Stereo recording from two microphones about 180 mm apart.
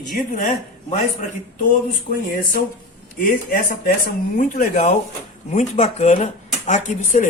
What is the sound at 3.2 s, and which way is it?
A man's voice, 50° left (ahead or behind).